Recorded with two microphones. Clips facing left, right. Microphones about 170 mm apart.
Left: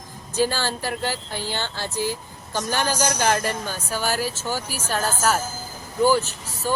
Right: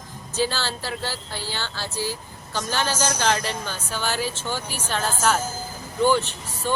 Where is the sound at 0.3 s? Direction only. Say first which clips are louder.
Left 3 dB; 15° left (ahead or behind).